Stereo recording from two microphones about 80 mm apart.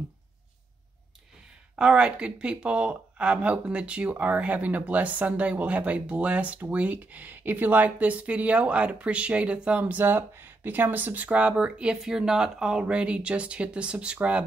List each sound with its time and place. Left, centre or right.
1.8 s speech: centre